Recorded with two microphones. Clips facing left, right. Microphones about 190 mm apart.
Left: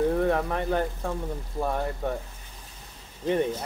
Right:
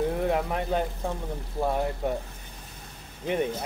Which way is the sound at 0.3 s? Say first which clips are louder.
Left 1 dB; 15° right (ahead or behind).